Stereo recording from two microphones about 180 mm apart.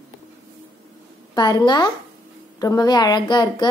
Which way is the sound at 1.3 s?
25° left (ahead or behind).